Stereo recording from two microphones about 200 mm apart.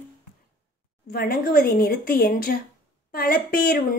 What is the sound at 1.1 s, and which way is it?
Speech, 50° left (ahead or behind).